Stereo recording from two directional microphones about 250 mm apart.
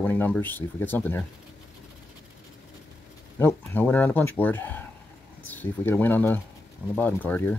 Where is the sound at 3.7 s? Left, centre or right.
Centre.